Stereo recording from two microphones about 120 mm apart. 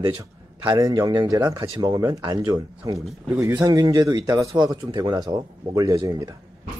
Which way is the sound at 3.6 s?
35° right (ahead or behind).